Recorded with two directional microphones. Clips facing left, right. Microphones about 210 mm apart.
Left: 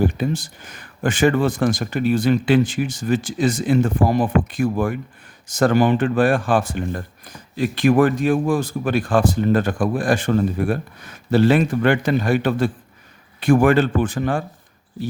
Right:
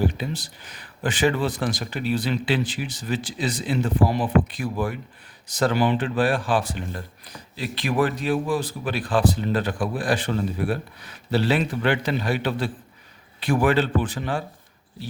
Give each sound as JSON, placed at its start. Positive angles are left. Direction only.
{"t": 0.0, "sound": "speech", "side_deg": 50}